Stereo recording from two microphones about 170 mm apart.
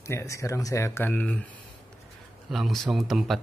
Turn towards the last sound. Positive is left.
turn(degrees=0)  # may be behind; listen again after turning